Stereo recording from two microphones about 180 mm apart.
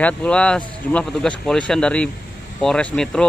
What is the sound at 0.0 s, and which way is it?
Speech, 5° left (ahead or behind).